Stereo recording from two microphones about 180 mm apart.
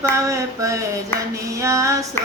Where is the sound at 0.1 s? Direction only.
15° right (ahead or behind).